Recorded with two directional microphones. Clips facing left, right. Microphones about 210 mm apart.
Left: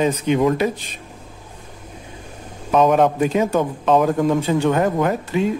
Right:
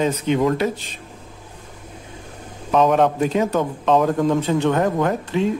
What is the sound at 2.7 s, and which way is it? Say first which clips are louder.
Speech: left 1 dB; 10° left (ahead or behind).